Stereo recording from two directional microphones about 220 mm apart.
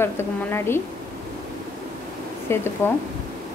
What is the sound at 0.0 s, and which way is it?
Speech, 10° left (ahead or behind).